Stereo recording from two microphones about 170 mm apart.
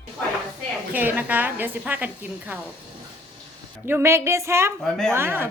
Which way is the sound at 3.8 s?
15° right (ahead or behind).